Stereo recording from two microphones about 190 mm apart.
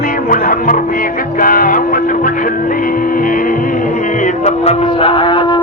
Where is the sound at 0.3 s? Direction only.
50° left (ahead or behind).